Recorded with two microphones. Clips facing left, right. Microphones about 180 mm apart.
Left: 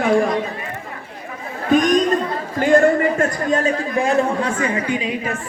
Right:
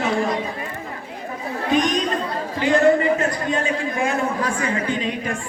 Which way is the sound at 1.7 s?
45° left (ahead or behind).